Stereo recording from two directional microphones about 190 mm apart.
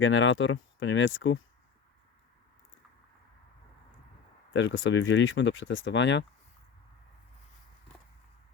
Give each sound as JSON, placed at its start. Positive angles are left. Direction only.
{"t": 0.0, "sound": "speech", "side_deg": 90}
{"t": 4.5, "sound": "speech", "side_deg": 75}